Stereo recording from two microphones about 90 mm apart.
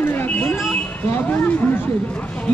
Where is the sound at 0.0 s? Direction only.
20° left (ahead or behind).